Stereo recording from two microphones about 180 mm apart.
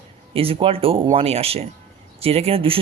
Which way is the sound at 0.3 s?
30° right (ahead or behind).